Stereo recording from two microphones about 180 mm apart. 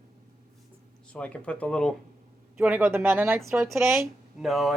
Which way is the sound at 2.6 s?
10° right (ahead or behind).